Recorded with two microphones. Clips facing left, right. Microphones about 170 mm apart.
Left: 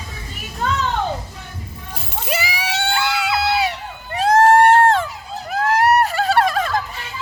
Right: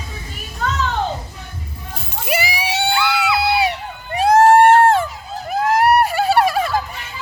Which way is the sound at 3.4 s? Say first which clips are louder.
Right 1 dB; 10° right (ahead or behind).